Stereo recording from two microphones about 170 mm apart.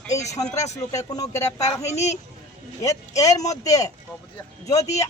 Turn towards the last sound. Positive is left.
turn(degrees=20)  # may be behind; listen again after turning